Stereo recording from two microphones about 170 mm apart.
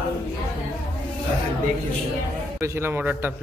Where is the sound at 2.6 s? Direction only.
15° right (ahead or behind).